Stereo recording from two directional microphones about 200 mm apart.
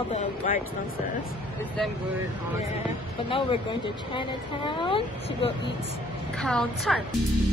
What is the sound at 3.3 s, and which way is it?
A woman's voice, 25° left (ahead or behind).